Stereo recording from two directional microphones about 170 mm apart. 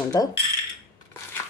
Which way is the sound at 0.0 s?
20° left (ahead or behind).